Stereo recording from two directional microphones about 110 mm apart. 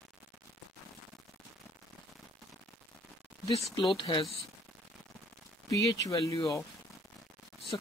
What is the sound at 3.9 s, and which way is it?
Speech, 50° left (ahead or behind).